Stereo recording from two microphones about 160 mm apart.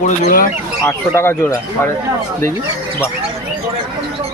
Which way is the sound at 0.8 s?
15° left (ahead or behind).